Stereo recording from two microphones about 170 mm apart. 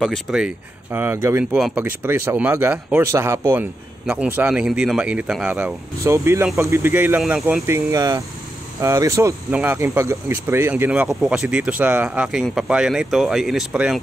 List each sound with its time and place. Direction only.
0.0 s speech: centre (ahead or behind)
0.9 s speech: 10° right (ahead or behind)
7.6 s speech: 20° right (ahead or behind)